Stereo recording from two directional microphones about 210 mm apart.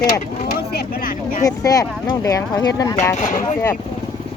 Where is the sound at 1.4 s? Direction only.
15° left (ahead or behind).